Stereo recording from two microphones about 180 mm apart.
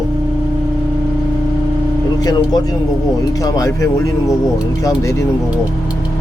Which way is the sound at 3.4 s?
20° left (ahead or behind).